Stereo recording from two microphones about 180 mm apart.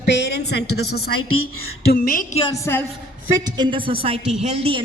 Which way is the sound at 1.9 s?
55° left (ahead or behind).